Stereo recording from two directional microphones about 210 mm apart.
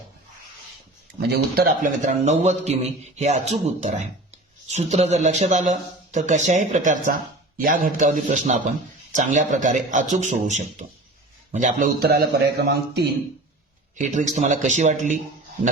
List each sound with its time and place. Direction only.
1.2 s a man's voice: 45° right (ahead or behind)
14.1 s speech: 35° right (ahead or behind)